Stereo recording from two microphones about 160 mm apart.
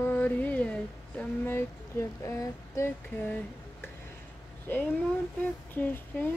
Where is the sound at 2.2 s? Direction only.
20° left (ahead or behind).